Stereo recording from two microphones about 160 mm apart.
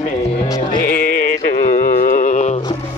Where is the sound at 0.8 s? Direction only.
60° left (ahead or behind).